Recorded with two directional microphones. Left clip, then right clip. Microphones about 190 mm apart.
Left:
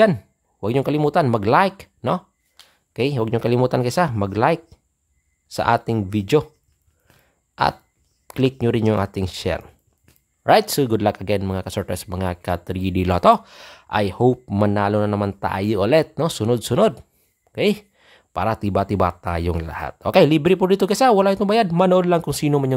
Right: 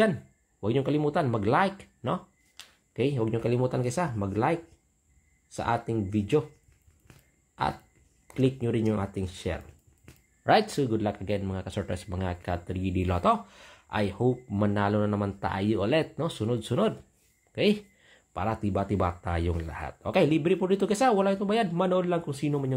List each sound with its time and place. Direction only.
0.0 s speech: 35° left (ahead or behind)
8.3 s speech: 40° left (ahead or behind)